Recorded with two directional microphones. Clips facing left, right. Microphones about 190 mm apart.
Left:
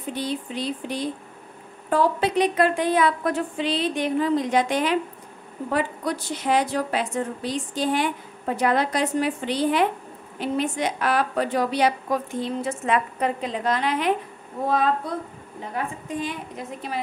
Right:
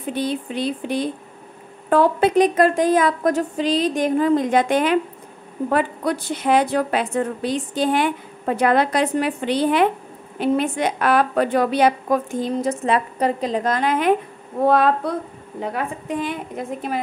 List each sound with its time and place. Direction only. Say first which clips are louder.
0.1 s a woman's voice: right 4 dB; 60° right (ahead or behind)
15.6 s a woman's voice: right 4 dB; 70° right (ahead or behind); by 17.0 s 50° right (ahead or behind)